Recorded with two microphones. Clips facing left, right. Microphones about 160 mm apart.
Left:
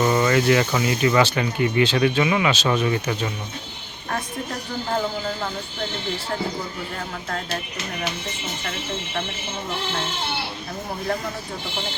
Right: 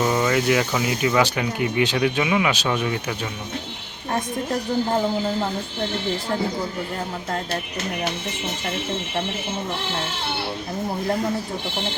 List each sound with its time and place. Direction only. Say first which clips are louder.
0.0 s speech: left 2 dB; 5° right (ahead or behind)